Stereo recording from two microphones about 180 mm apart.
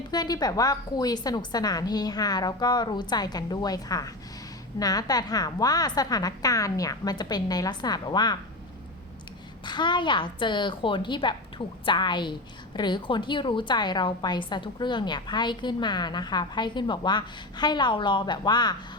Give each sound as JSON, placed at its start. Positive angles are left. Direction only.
{"t": 0.1, "sound": "a woman's voice", "side_deg": 20}
{"t": 9.6, "sound": "a woman's voice", "side_deg": 25}